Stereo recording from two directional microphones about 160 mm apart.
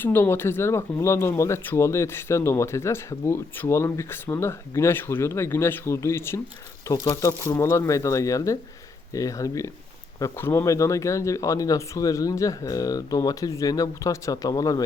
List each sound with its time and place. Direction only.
0.0 s speech: 15° left (ahead or behind)